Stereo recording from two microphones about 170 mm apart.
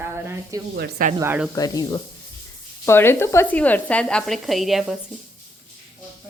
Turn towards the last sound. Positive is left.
turn(degrees=0)  # may be behind; listen again after turning